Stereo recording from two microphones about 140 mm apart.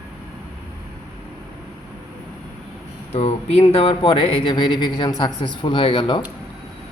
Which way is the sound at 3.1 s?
50° left (ahead or behind).